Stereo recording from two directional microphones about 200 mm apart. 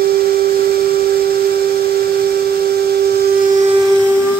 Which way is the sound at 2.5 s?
50° right (ahead or behind).